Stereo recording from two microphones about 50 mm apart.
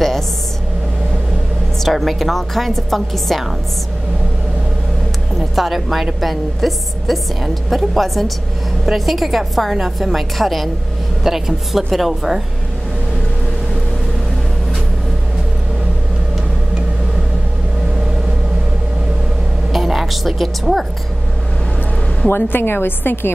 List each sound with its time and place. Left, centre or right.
1.8 s a woman's voice: centre
5.6 s a woman's voice: centre
19.7 s music: centre
22.3 s a woman's voice: left